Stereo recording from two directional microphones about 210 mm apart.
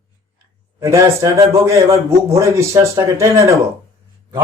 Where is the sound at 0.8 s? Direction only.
15° right (ahead or behind).